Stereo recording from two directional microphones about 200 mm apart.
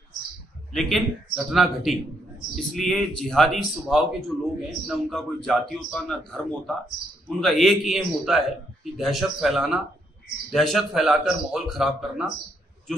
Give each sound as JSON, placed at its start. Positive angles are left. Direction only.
{"t": 0.7, "sound": "a man's voice", "side_deg": 0}